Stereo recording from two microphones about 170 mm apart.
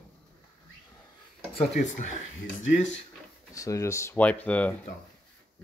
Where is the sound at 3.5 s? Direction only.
20° left (ahead or behind).